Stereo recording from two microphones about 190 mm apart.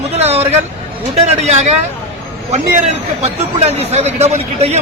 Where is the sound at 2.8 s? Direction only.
35° right (ahead or behind).